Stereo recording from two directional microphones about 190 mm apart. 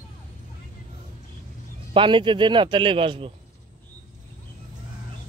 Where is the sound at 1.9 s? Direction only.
25° right (ahead or behind).